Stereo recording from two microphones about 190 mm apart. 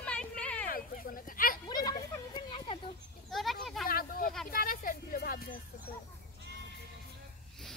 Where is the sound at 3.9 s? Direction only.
50° left (ahead or behind).